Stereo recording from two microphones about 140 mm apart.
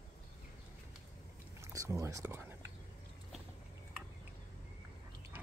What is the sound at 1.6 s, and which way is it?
Speech, 20° right (ahead or behind).